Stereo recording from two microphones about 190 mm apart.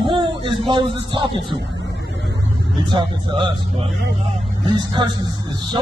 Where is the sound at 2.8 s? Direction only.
25° right (ahead or behind).